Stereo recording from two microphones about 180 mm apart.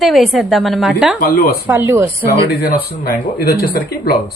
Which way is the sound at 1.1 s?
55° left (ahead or behind).